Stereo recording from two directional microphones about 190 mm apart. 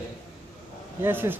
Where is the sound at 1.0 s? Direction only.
10° right (ahead or behind).